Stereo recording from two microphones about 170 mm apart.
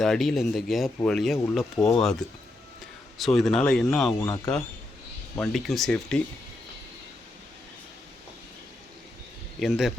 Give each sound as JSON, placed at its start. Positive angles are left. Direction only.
{"t": 0.0, "sound": "speech", "side_deg": 0}
{"t": 4.2, "sound": "speech", "side_deg": 20}
{"t": 5.4, "sound": "speech", "side_deg": 0}
{"t": 9.6, "sound": "speech", "side_deg": 0}